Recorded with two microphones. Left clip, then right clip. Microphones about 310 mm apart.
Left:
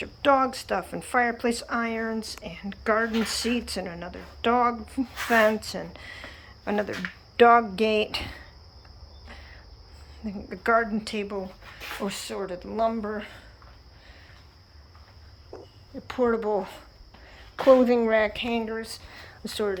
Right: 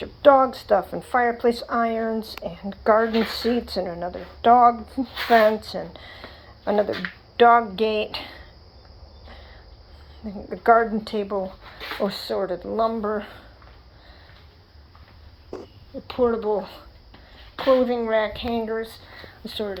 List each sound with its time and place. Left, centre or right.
0.0 s a woman's voice: centre
2.5 s a woman's voice: centre
8.2 s cricket: centre
10.2 s a woman's voice: centre
16.1 s speech: centre
17.7 s a woman's voice: centre